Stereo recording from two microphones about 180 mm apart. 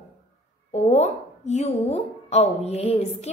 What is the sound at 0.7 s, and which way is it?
A woman's voice, 40° left (ahead or behind).